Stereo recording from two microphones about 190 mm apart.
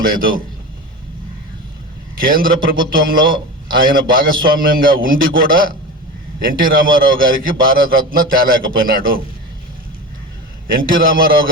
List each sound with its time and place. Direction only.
0.0 s a man's voice: 50° right (ahead or behind)
2.1 s a man's voice: 50° right (ahead or behind)
10.8 s a man's voice: 50° right (ahead or behind)